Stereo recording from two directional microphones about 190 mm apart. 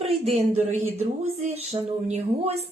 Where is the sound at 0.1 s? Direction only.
35° right (ahead or behind).